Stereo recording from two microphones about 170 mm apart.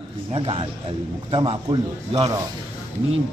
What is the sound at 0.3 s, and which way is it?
A man's voice, 35° right (ahead or behind).